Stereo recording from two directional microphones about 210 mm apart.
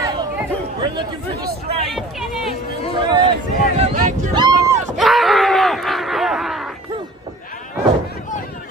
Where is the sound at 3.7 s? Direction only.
35° right (ahead or behind).